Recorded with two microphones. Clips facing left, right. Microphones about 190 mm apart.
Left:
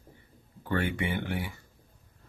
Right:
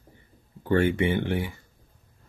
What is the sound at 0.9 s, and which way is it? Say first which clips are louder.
Speech: right 7 dB; 25° right (ahead or behind).